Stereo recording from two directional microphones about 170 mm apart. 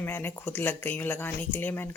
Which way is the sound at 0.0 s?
10° left (ahead or behind).